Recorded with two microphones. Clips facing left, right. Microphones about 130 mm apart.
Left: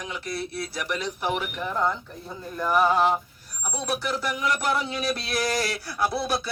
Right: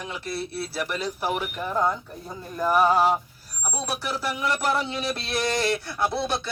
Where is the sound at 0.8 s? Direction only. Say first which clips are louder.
Right 1 dB; 35° right (ahead or behind).